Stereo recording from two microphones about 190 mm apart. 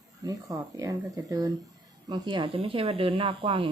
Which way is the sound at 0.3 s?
15° right (ahead or behind).